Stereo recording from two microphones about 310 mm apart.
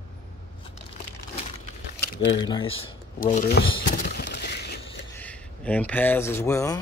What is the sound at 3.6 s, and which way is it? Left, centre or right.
Speech, centre.